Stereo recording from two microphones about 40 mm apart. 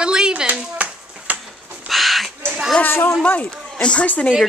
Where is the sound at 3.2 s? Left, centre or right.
Left.